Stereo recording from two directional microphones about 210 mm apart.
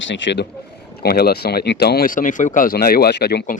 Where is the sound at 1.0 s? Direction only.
45° left (ahead or behind).